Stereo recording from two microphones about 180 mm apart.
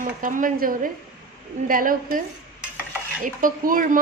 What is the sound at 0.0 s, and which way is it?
A woman's voice, 50° right (ahead or behind).